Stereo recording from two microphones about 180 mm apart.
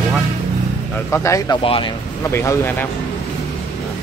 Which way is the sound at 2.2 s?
15° left (ahead or behind).